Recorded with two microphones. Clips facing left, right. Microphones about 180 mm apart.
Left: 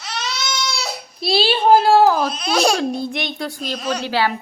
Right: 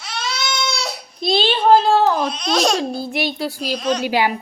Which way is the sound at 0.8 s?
5° left (ahead or behind).